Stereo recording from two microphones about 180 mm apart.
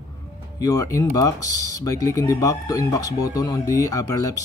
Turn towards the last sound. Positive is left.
turn(degrees=20)  # may be behind; listen again after turning